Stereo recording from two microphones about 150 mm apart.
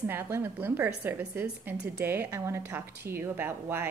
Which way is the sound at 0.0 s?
15° right (ahead or behind).